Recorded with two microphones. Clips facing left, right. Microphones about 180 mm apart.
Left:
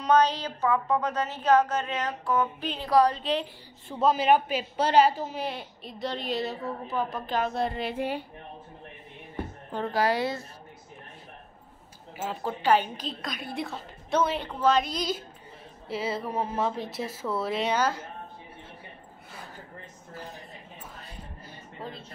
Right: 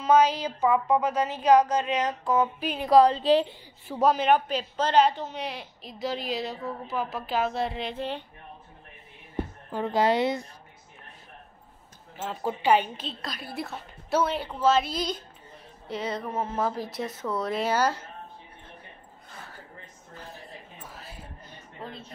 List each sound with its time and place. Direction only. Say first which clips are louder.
0.0 s a woman's voice: right 2 dB; 10° right (ahead or behind)
2.6 s a woman's voice: right 3 dB; 10° right (ahead or behind)
2.9 s a woman's voice: right 4 dB; 25° right (ahead or behind)
4.1 s speech: left 1 dB; 5° left (ahead or behind)
9.8 s a woman's voice: right 3 dB; 20° right (ahead or behind)
13.2 s speech: left 1 dB; centre (ahead or behind)
16.5 s speech: even; centre (ahead or behind)
21.0 s a sound: even; 5° right (ahead or behind)
21.8 s speech: left 1 dB; centre (ahead or behind)